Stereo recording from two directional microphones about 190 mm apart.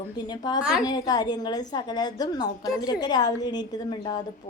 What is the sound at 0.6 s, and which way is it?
Speech, 5° right (ahead or behind).